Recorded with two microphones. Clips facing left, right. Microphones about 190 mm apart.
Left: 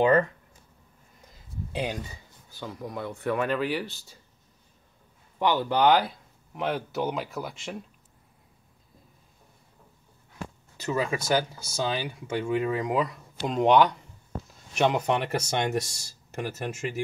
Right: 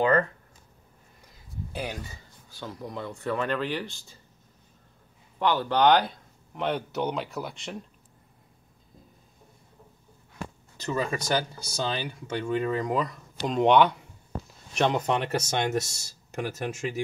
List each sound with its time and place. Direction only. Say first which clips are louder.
0.0 s speech: left 2 dB; 15° left (ahead or behind)
1.7 s speech: left 4 dB; 20° left (ahead or behind)
2.6 s speech: left 1 dB; 10° left (ahead or behind)
5.4 s speech: even; 10° left (ahead or behind)
10.8 s speech: left 1 dB; 10° left (ahead or behind)